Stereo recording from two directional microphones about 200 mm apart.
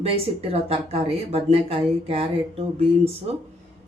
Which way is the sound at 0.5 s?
30° right (ahead or behind).